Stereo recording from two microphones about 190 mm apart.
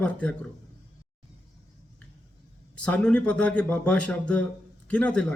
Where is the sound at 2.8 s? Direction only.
5° left (ahead or behind).